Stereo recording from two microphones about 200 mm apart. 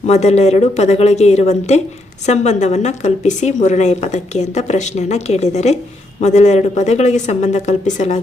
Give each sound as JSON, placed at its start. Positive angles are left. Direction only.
{"t": 0.1, "sound": "a woman's voice", "side_deg": 35}